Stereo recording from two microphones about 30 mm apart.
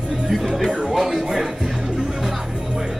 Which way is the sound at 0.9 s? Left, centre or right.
Centre.